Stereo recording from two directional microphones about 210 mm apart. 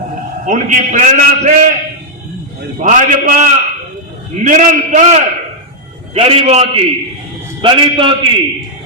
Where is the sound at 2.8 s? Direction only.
35° right (ahead or behind).